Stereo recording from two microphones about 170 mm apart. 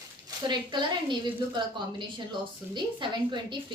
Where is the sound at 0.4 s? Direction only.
25° right (ahead or behind).